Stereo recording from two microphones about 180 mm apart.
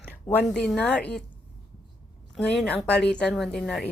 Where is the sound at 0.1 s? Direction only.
10° left (ahead or behind).